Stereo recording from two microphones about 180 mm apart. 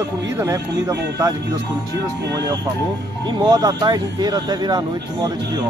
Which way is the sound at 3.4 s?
25° right (ahead or behind).